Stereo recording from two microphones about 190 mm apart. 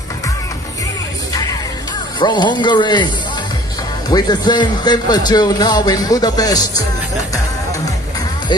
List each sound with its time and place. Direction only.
1.3 s music: 20° left (ahead or behind)
2.1 s a man's voice: 25° left (ahead or behind)
4.1 s a man's voice: 20° left (ahead or behind)